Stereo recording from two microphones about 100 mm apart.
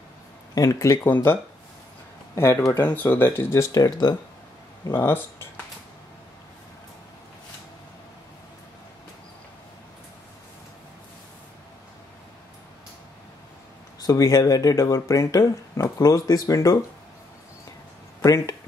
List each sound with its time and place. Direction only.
0.6 s speech: 30° left (ahead or behind)
3.7 s speech: 40° left (ahead or behind)
4.9 s speech: 25° left (ahead or behind)
14.0 s speech: 35° left (ahead or behind)
18.2 s speech: 35° left (ahead or behind)